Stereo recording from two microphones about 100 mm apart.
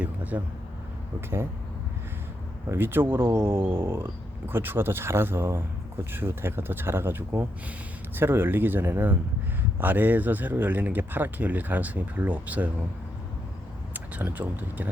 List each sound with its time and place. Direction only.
0.0 s a sound: 15° right (ahead or behind)
2.6 s a man's voice: 20° right (ahead or behind)
13.9 s speech: 15° right (ahead or behind)